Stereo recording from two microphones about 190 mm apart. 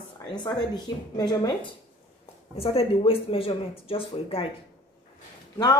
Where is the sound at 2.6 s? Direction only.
30° left (ahead or behind).